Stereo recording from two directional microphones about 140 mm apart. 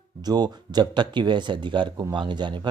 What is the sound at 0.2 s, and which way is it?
Speech, 30° right (ahead or behind).